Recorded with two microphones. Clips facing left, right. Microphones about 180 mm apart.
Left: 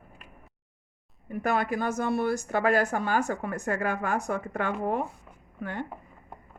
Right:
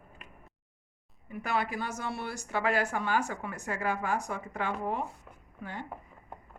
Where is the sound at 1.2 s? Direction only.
50° left (ahead or behind).